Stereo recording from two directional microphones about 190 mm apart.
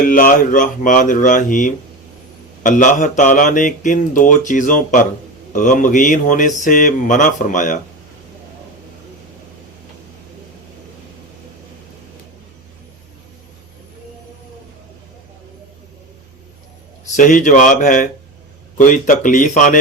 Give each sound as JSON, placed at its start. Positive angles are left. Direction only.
{"t": 0.0, "sound": "speech", "side_deg": 45}
{"t": 17.2, "sound": "speech", "side_deg": 45}